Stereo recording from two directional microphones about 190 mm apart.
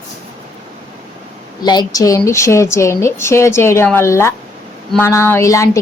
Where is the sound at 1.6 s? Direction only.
20° left (ahead or behind).